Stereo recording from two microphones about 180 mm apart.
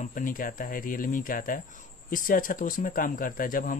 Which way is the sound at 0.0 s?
50° left (ahead or behind).